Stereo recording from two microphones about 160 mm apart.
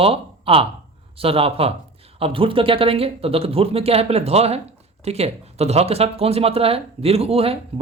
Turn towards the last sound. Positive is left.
turn(degrees=-35)  # may be behind; listen again after turning